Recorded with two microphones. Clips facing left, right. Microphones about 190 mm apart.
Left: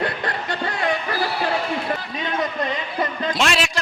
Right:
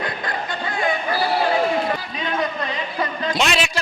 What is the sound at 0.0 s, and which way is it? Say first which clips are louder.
Music: left 2 dB; 70° left (ahead or behind).